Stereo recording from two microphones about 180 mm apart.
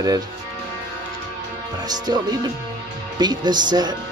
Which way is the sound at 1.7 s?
20° right (ahead or behind).